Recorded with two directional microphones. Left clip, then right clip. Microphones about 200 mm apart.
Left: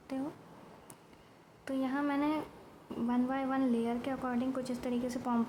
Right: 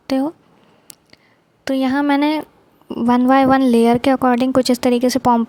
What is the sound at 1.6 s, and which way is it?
A woman's voice, 50° right (ahead or behind).